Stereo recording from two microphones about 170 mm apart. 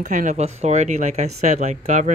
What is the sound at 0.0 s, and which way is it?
Speech, 45° right (ahead or behind).